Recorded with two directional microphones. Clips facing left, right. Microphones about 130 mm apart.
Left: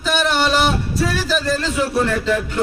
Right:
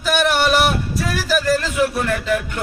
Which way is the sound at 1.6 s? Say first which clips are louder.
Left 1 dB; 30° left (ahead or behind).